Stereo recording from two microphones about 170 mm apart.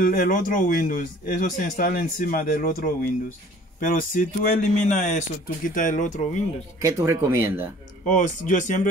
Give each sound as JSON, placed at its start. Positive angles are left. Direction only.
{"t": 0.0, "sound": "a man's voice", "side_deg": 55}
{"t": 6.8, "sound": "speech", "side_deg": -15}
{"t": 8.0, "sound": "speech", "side_deg": 50}